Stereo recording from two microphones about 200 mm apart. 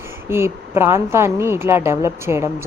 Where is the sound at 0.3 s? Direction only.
10° right (ahead or behind).